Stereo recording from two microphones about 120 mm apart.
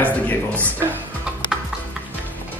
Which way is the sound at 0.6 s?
20° right (ahead or behind).